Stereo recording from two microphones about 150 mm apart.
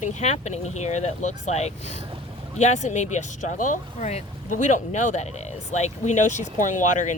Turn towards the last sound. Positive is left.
turn(degrees=55)  # may be behind; listen again after turning